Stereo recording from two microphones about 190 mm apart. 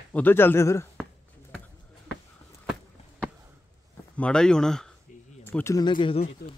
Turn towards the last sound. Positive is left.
turn(degrees=25)  # may be behind; listen again after turning